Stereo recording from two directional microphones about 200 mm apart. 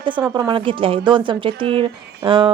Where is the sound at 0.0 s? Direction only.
25° right (ahead or behind).